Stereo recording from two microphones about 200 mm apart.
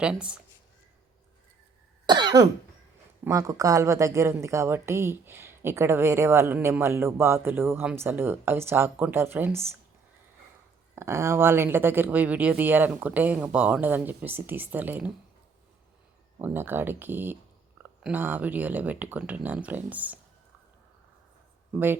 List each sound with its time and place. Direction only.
0.0 s speech: 5° right (ahead or behind)
2.0 s cough: 20° right (ahead or behind)
3.2 s speech: 15° right (ahead or behind)
10.9 s speech: 15° right (ahead or behind)
16.4 s speech: 10° right (ahead or behind)
21.7 s speech: 10° right (ahead or behind)